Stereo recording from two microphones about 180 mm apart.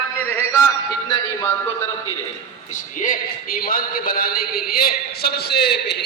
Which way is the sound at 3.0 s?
50° left (ahead or behind).